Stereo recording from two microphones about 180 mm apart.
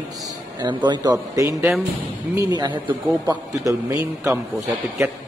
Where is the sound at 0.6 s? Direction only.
25° right (ahead or behind).